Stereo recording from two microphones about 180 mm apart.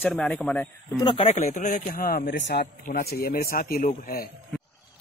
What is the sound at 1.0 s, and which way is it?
Speech, 30° left (ahead or behind).